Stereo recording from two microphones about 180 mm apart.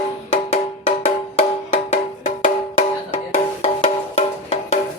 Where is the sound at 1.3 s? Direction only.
40° left (ahead or behind).